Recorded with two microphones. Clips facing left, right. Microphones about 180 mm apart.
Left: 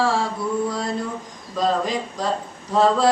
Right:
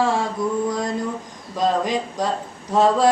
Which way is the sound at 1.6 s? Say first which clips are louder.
Right 1 dB; 15° right (ahead or behind).